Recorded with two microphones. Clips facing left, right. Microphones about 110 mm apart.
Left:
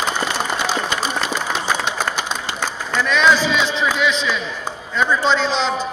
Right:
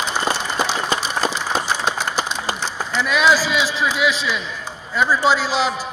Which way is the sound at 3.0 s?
5° right (ahead or behind).